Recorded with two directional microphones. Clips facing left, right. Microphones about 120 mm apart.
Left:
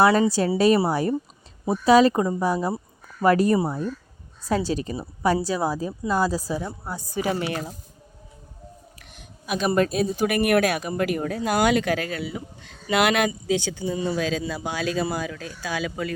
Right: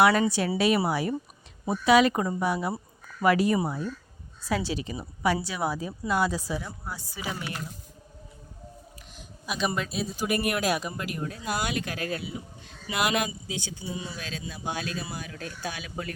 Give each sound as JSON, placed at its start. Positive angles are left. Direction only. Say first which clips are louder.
{"t": 0.0, "sound": "a woman's voice", "louder": "left 3 dB", "side_deg": 30}
{"t": 3.2, "sound": "a woman's voice", "louder": "left 4 dB", "side_deg": 40}
{"t": 6.6, "sound": "speech", "louder": "left 6 dB", "side_deg": 20}
{"t": 7.0, "sound": "speech", "louder": "left 12 dB", "side_deg": 50}
{"t": 9.0, "sound": "speech", "louder": "even", "side_deg": 55}
{"t": 13.9, "sound": "speech", "louder": "left 11 dB", "side_deg": 50}
{"t": 14.2, "sound": "speech", "louder": "left 12 dB", "side_deg": 90}
{"t": 14.9, "sound": "speech", "louder": "left 10 dB", "side_deg": 80}
{"t": 15.7, "sound": "speech", "louder": "left 9 dB", "side_deg": 90}